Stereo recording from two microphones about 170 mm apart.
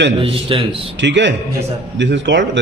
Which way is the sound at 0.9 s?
90° right.